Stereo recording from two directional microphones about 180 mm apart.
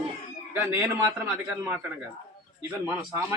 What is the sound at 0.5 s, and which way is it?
A man's voice, 10° right (ahead or behind).